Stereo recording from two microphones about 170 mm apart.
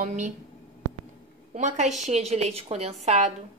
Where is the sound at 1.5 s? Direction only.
45° right (ahead or behind).